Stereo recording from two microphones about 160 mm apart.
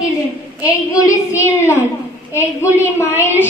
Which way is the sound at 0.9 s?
20° left (ahead or behind).